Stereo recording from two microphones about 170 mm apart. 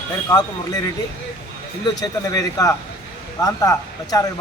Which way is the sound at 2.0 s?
20° left (ahead or behind).